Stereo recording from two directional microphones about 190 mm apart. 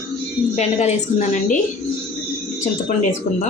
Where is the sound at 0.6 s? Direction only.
35° left (ahead or behind).